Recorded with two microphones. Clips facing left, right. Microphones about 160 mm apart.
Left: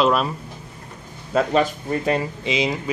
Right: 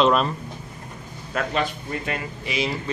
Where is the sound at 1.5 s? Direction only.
35° left (ahead or behind).